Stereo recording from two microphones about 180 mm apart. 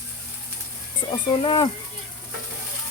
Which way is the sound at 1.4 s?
30° left (ahead or behind).